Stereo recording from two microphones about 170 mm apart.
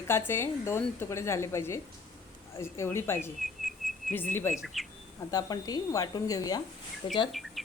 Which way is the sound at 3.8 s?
Centre (ahead or behind).